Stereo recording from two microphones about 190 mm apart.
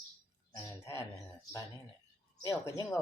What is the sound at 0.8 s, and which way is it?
Speech, 15° left (ahead or behind).